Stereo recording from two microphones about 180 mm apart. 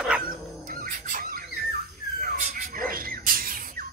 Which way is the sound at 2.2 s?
50° right (ahead or behind).